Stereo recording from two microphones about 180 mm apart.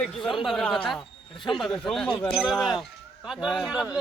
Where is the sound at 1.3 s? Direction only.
25° left (ahead or behind).